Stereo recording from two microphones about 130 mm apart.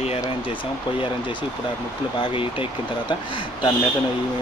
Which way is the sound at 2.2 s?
45° left (ahead or behind).